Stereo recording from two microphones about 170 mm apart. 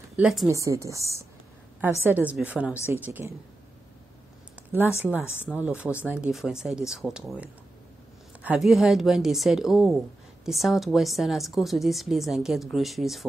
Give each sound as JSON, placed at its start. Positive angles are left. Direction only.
{"t": 0.1, "sound": "a woman's voice", "side_deg": -5}
{"t": 0.5, "sound": "a woman's voice", "side_deg": -20}
{"t": 4.6, "sound": "a sound", "side_deg": -10}
{"t": 5.4, "sound": "a woman's voice", "side_deg": -10}